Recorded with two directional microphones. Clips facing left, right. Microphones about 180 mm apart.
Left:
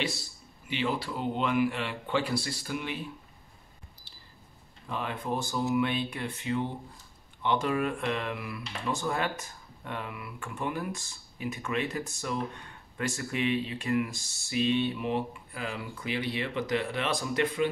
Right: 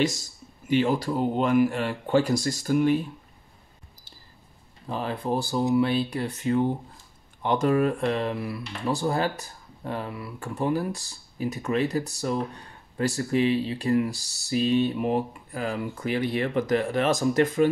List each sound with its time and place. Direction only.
0.0 s speech: 45° right (ahead or behind)
4.8 s speech: 35° right (ahead or behind)